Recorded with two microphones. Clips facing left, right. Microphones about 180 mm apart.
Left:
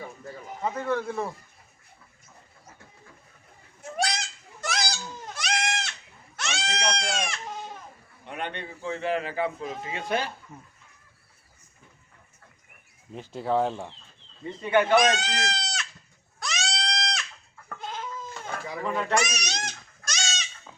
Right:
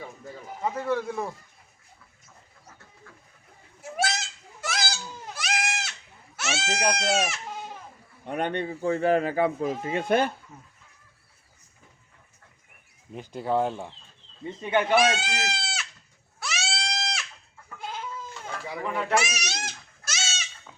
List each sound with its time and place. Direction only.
0.6 s a man's voice: 10° right (ahead or behind)
3.8 s goose: 5° right (ahead or behind)
4.6 s goat: 5° right (ahead or behind)
8.2 s speech: 45° right (ahead or behind)
13.1 s speech: centre (ahead or behind)
14.6 s speech: 20° right (ahead or behind)
14.9 s speech: 5° right (ahead or behind)
16.4 s goat: 5° right (ahead or behind)
19.1 s goat: 5° right (ahead or behind)